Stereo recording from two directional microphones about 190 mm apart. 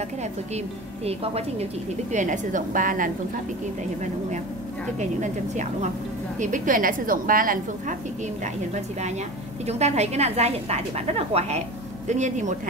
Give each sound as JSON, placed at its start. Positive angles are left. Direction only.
{"t": 1.0, "sound": "a woman's voice", "side_deg": -35}
{"t": 4.9, "sound": "a woman's voice", "side_deg": -40}
{"t": 9.7, "sound": "a woman's voice", "side_deg": -35}